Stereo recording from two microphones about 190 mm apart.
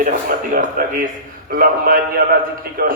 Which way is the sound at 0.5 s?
45° right (ahead or behind).